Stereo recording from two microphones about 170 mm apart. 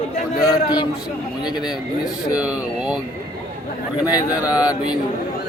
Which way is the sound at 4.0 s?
20° left (ahead or behind).